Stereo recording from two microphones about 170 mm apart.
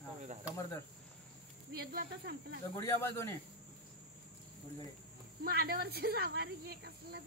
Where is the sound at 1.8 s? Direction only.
70° right (ahead or behind).